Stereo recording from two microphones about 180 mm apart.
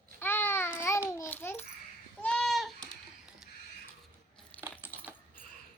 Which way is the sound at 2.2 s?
5° left (ahead or behind).